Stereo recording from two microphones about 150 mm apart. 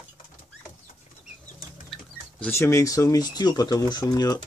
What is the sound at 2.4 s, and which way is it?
Speech, 15° left (ahead or behind).